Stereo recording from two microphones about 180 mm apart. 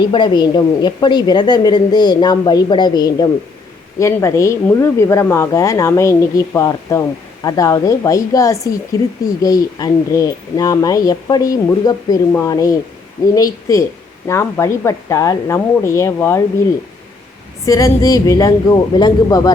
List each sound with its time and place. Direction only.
0.0 s a woman's voice: 25° left (ahead or behind)
17.7 s speech: 20° left (ahead or behind)